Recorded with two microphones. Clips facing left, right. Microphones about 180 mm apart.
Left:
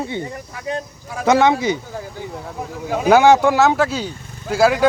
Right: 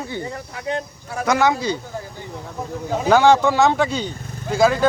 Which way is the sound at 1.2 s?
25° left (ahead or behind).